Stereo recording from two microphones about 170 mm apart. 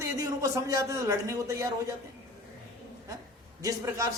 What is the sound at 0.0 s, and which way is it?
A man's voice, 20° right (ahead or behind).